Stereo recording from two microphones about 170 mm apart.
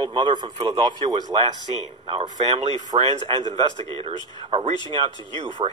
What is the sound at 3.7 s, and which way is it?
Speech, 25° left (ahead or behind).